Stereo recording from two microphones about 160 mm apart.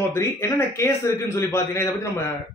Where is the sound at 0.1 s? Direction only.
15° left (ahead or behind).